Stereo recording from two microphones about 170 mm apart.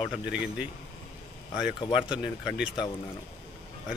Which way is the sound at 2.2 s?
5° right (ahead or behind).